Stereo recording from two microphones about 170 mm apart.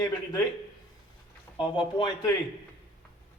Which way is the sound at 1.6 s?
25° left (ahead or behind).